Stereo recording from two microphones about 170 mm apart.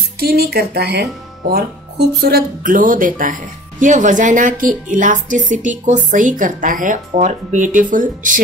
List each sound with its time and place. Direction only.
0.2 s a woman's voice: 65° right (ahead or behind); by 8.4 s 50° right (ahead or behind)